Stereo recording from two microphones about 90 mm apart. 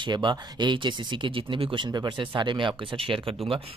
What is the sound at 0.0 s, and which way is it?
Speech, 60° right (ahead or behind).